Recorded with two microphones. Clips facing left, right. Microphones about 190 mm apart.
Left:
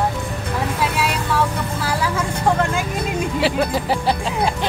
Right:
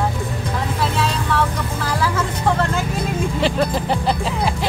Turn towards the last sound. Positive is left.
turn(degrees=5)  # may be behind; listen again after turning